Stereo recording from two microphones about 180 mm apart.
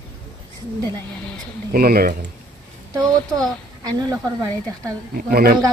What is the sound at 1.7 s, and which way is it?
Speech, 55° right (ahead or behind).